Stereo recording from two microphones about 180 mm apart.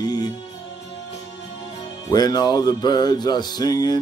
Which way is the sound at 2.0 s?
20° left (ahead or behind).